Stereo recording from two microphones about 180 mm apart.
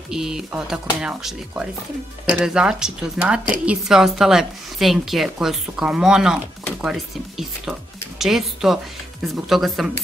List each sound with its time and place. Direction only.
0.1 s speech: 5° right (ahead or behind)